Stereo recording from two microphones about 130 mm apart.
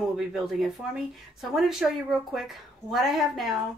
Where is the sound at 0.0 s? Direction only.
5° right (ahead or behind).